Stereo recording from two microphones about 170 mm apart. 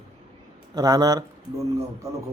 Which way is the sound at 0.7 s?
20° right (ahead or behind).